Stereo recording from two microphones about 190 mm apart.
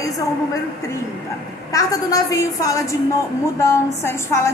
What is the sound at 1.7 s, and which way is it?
A woman's voice, 20° left (ahead or behind).